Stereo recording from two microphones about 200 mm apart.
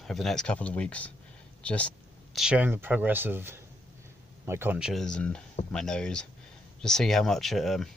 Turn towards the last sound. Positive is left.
turn(degrees=0)  # may be behind; listen again after turning